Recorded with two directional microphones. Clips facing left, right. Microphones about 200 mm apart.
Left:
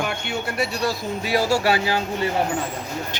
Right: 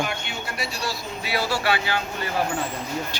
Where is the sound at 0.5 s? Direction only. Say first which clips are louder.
Left 6 dB; 50° left (ahead or behind); by 2.3 s 35° left (ahead or behind).